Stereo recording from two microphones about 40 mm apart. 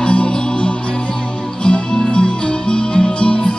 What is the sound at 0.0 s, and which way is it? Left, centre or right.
Music, left.